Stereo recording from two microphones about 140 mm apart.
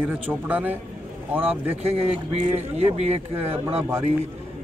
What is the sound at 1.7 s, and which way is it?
Speech, 45° right (ahead or behind).